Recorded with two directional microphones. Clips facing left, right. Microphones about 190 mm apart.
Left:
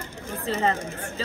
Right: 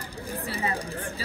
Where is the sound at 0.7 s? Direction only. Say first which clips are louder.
Even; 35° right (ahead or behind).